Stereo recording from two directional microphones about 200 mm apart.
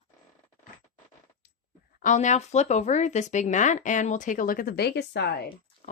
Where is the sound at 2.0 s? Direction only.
35° left (ahead or behind); by 5.3 s 55° left (ahead or behind).